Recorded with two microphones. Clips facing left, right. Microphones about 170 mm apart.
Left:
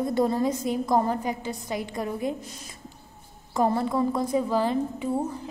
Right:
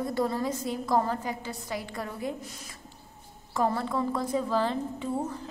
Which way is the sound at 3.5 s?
20° left (ahead or behind).